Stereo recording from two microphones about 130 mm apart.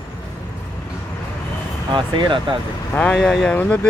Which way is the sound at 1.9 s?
40° right (ahead or behind).